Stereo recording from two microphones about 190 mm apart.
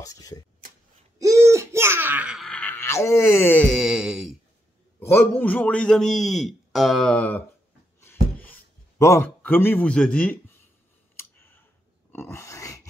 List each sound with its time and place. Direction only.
0.0 s speech: 20° left (ahead or behind)
1.2 s speech: 15° right (ahead or behind)
5.4 s speech: 10° left (ahead or behind)
8.0 s a sound: 10° left (ahead or behind)
11.1 s clicking: 10° left (ahead or behind)
12.1 s dog: 15° left (ahead or behind)